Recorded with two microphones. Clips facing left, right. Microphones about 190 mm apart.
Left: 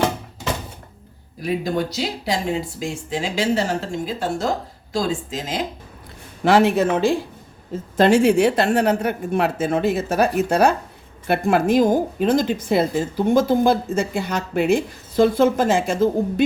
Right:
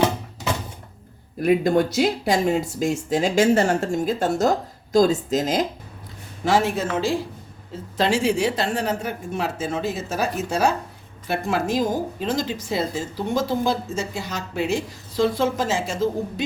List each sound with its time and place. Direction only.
1.4 s speech: 55° right (ahead or behind)
6.4 s a woman's voice: 65° left (ahead or behind)